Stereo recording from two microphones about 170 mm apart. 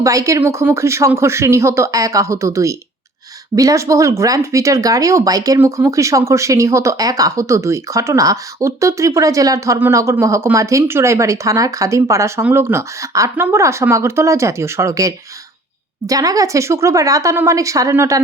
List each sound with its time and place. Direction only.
0.0 s speech: 20° right (ahead or behind)